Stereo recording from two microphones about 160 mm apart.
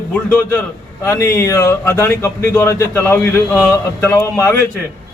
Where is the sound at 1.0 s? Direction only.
15° left (ahead or behind).